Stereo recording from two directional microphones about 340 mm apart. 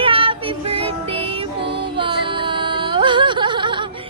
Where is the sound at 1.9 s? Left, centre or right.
Centre.